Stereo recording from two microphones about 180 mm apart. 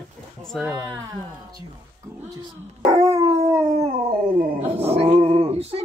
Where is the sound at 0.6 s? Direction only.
15° right (ahead or behind).